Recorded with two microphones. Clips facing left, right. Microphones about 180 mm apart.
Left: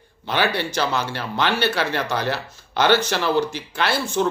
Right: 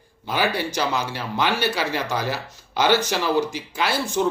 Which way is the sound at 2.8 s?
15° right (ahead or behind).